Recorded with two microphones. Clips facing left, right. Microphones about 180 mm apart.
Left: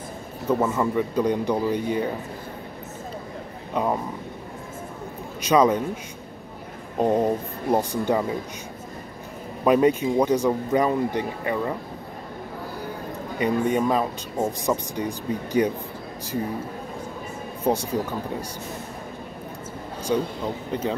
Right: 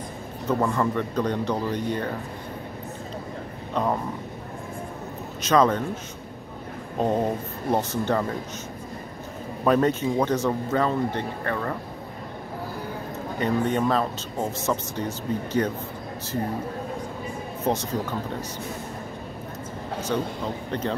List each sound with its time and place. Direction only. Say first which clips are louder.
0.5 s speech: left 1 dB; 5° left (ahead or behind)
3.7 s speech: left 1 dB; 10° left (ahead or behind)
5.4 s speech: left 2 dB; 10° left (ahead or behind)
7.0 s speech: left 3 dB; 10° left (ahead or behind)
9.7 s speech: left 3 dB; 10° left (ahead or behind)
13.4 s speech: left 2 dB; 10° left (ahead or behind)
17.6 s speech: left 3 dB; 10° left (ahead or behind)
20.1 s speech: left 4 dB; 10° left (ahead or behind)